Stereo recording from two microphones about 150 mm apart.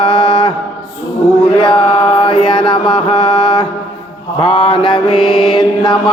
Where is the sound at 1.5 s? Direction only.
30° left (ahead or behind).